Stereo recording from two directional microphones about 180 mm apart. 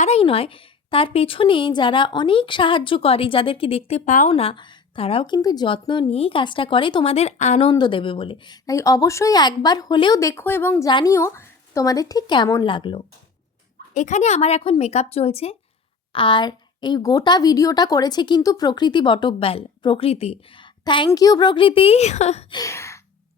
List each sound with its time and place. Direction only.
0.0 s a woman's voice: 35° left (ahead or behind)
7.7 s a woman's voice: 25° left (ahead or behind)
13.9 s a woman's voice: 40° left (ahead or behind)
22.5 s gasp: 15° left (ahead or behind)